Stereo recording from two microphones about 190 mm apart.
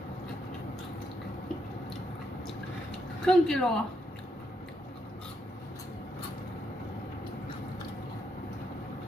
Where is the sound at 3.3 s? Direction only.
5° left (ahead or behind).